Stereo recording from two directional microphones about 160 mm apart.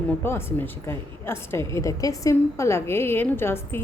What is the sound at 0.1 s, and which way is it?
A woman's voice, 15° left (ahead or behind).